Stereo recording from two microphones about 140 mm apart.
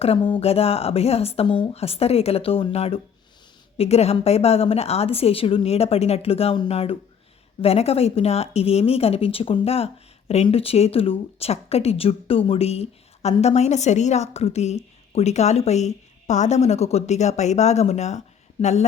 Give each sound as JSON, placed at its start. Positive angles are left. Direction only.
{"t": 0.0, "sound": "speech", "side_deg": 40}